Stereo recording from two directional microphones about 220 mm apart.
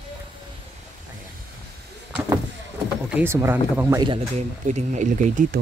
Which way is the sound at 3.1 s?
10° right (ahead or behind).